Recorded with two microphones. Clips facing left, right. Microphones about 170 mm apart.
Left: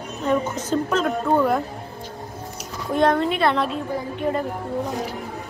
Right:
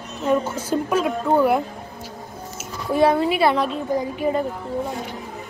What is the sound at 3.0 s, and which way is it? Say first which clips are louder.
Speech: right 2 dB; 5° right (ahead or behind).